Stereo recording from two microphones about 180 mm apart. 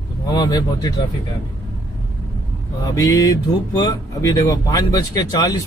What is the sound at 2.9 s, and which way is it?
Speech, 20° left (ahead or behind).